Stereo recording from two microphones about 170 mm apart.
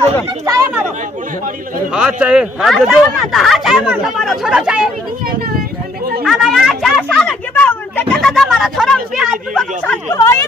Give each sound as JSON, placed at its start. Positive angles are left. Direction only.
{"t": 1.9, "sound": "speech", "side_deg": -5}
{"t": 6.2, "sound": "a sound", "side_deg": 0}
{"t": 8.1, "sound": "speech", "side_deg": 5}
{"t": 10.0, "sound": "speech", "side_deg": 15}